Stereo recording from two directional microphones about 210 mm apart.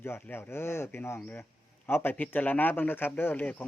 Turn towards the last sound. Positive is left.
turn(degrees=10)  # may be behind; listen again after turning